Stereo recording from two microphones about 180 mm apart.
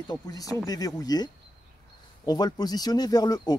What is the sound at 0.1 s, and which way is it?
Speech, 20° left (ahead or behind).